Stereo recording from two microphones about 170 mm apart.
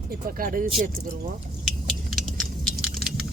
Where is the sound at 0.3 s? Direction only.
55° right (ahead or behind).